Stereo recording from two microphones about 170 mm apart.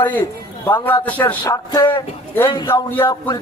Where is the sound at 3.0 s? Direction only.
25° left (ahead or behind).